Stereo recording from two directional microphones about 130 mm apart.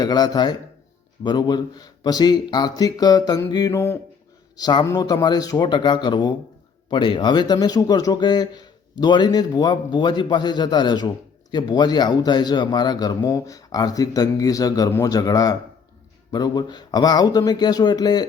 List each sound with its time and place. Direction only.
0.0 s speech: 30° left (ahead or behind)
4.5 s speech: 35° left (ahead or behind)